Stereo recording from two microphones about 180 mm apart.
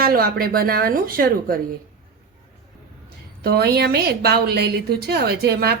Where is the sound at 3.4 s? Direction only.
60° right (ahead or behind).